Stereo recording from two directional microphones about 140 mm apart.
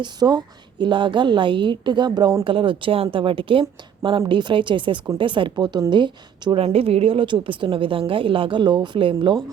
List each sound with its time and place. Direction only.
0.0 s speech: 30° right (ahead or behind)
6.7 s speech: 45° right (ahead or behind)